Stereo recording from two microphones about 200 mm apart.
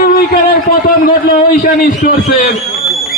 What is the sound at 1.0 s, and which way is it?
A man's voice, 45° left (ahead or behind).